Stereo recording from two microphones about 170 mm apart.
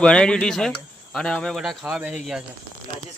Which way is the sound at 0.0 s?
5° left (ahead or behind).